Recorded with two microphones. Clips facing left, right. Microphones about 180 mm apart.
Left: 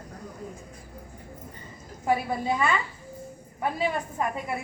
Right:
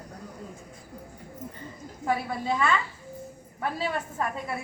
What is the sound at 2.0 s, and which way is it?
A woman's voice, 20° left (ahead or behind).